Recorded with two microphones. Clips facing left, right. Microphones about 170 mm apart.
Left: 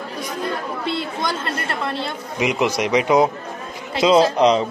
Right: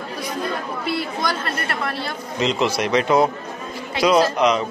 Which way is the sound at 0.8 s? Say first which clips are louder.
Right 1 dB; 25° left (ahead or behind).